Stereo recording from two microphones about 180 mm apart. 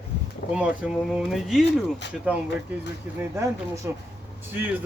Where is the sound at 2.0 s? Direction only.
75° left (ahead or behind).